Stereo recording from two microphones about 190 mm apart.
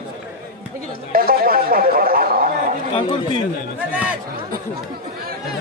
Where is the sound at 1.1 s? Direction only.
50° right (ahead or behind).